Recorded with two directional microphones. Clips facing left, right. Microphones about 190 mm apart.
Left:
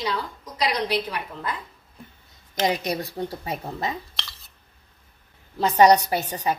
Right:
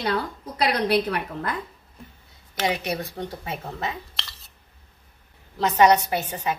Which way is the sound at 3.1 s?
35° left (ahead or behind).